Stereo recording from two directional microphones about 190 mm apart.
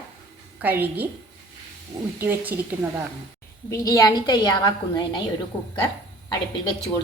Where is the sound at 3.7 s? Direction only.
15° left (ahead or behind).